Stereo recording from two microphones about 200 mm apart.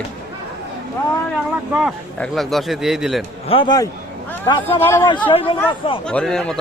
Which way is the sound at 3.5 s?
25° left (ahead or behind).